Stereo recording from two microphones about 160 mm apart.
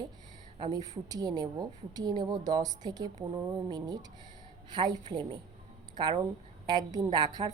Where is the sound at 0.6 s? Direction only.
25° right (ahead or behind).